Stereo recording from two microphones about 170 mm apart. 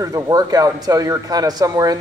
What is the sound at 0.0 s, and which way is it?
A man's voice, 20° right (ahead or behind).